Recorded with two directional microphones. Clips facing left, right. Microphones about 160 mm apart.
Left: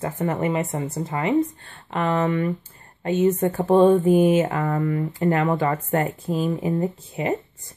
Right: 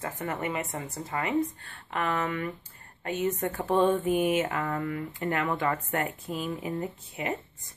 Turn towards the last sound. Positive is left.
turn(degrees=30)  # may be behind; listen again after turning